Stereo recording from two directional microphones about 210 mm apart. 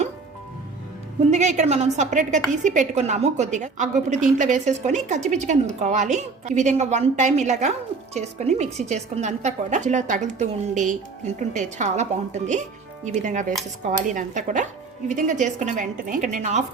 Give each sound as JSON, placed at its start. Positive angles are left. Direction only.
{"t": 1.3, "sound": "a woman's voice", "side_deg": -35}